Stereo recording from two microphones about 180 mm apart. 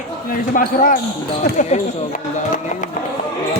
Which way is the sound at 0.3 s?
50° left (ahead or behind).